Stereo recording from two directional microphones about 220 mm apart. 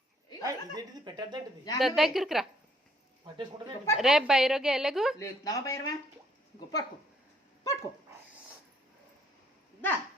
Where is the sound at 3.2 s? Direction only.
20° right (ahead or behind).